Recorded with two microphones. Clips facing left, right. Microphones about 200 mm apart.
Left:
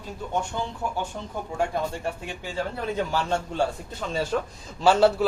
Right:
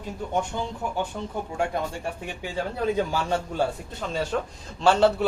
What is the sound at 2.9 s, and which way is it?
Speech, 15° right (ahead or behind).